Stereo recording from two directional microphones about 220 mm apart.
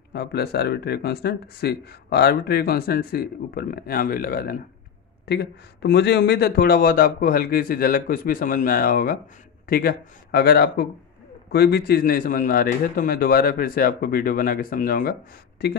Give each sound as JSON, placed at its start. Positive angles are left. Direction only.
{"t": 0.1, "sound": "speech", "side_deg": 45}